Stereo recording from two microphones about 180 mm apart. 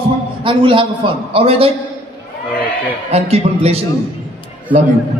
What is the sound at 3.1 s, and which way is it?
Speech, 35° right (ahead or behind).